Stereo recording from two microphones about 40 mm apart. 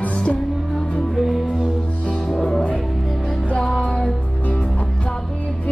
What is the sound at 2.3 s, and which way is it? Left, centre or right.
Music, centre.